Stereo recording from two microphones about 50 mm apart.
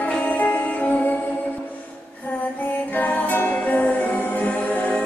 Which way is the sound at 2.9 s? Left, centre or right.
Left.